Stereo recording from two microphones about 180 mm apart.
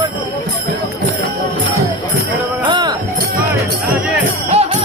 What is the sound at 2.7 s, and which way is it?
Music, 25° right (ahead or behind).